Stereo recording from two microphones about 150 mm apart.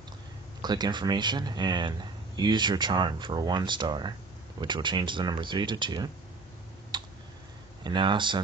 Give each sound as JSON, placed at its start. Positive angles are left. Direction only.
{"t": 0.6, "sound": "speech", "side_deg": -30}
{"t": 6.9, "sound": "clicking", "side_deg": -30}
{"t": 7.8, "sound": "speech", "side_deg": -30}